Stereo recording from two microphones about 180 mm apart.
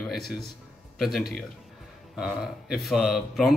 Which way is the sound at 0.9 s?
Centre (ahead or behind).